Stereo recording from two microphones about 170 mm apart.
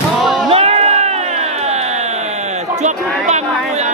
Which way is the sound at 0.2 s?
Centre (ahead or behind).